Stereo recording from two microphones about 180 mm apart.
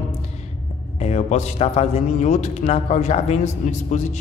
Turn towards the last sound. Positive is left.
turn(degrees=40)  # may be behind; listen again after turning